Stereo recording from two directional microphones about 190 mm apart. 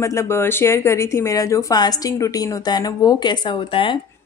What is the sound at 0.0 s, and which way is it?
Speech, 15° left (ahead or behind).